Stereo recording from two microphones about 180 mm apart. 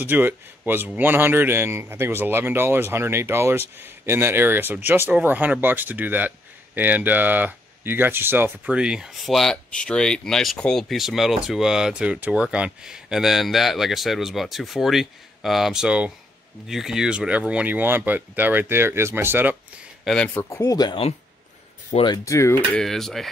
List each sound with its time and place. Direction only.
0.0 s speech: 10° right (ahead or behind)
20.1 s speech: 5° left (ahead or behind)
20.4 s speech: 15° left (ahead or behind)
22.8 s speech: centre (ahead or behind)